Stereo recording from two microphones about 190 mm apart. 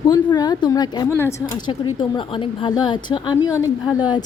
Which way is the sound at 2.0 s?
25° left (ahead or behind).